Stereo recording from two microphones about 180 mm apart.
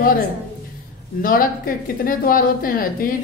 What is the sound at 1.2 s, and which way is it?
A woman's voice, 50° left (ahead or behind).